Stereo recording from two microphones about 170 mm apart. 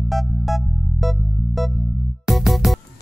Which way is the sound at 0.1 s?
Centre (ahead or behind).